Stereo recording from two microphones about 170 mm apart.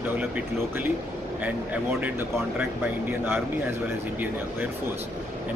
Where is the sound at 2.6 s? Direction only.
10° right (ahead or behind).